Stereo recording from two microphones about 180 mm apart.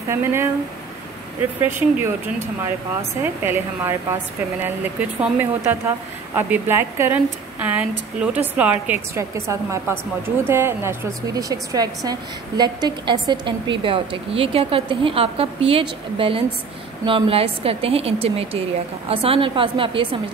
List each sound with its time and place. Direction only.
0.1 s a woman's voice: 15° right (ahead or behind)
1.6 s a woman's voice: 10° right (ahead or behind)
3.2 s a woman's voice: 15° right (ahead or behind)
5.2 s a woman's voice: 10° right (ahead or behind); by 20.2 s 30° right (ahead or behind)